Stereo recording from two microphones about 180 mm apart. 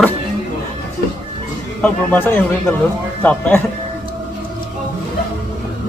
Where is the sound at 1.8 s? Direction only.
10° left (ahead or behind).